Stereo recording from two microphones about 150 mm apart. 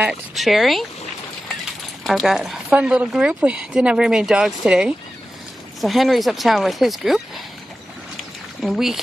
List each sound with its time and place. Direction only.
0.0 s speech: centre (ahead or behind)
2.0 s speech: centre (ahead or behind)
8.2 s a sound: centre (ahead or behind)